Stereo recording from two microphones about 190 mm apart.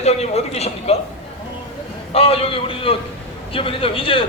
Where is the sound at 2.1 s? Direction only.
30° left (ahead or behind).